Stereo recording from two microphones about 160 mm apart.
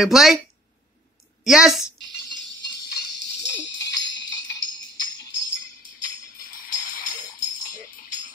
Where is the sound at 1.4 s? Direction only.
5° right (ahead or behind).